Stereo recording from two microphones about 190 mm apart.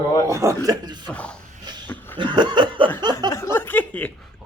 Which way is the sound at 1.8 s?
10° left (ahead or behind).